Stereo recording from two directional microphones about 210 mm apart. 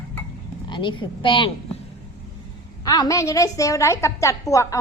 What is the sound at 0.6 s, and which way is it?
Speech, 20° left (ahead or behind).